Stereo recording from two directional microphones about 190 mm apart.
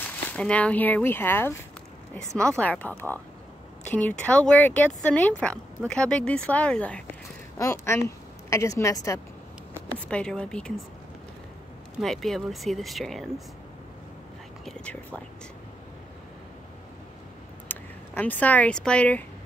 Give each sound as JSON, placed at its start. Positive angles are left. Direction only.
{"t": 0.0, "sound": "speech", "side_deg": 5}
{"t": 9.9, "sound": "speech", "side_deg": 5}
{"t": 12.0, "sound": "speech", "side_deg": 0}
{"t": 14.6, "sound": "whispering", "side_deg": 0}
{"t": 17.6, "sound": "speech", "side_deg": 10}